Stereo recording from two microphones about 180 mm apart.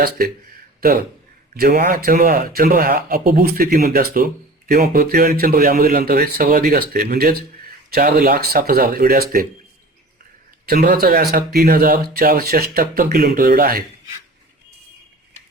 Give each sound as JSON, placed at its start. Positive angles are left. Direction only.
{"t": 0.8, "sound": "a man's voice", "side_deg": -55}
{"t": 10.7, "sound": "speech", "side_deg": -55}